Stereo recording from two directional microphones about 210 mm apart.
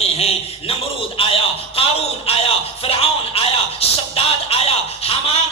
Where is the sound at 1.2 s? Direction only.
25° left (ahead or behind).